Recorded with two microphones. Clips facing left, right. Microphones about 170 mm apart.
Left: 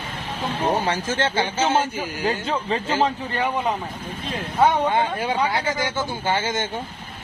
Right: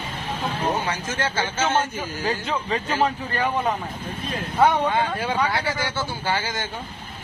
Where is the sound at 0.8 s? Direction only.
35° left (ahead or behind); by 2.3 s 10° left (ahead or behind).